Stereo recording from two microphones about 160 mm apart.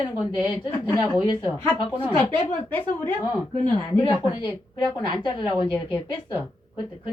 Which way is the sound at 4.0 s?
30° left (ahead or behind).